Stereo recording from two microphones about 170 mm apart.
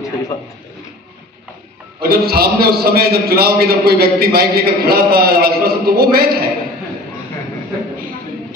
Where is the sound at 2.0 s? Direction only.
65° right (ahead or behind).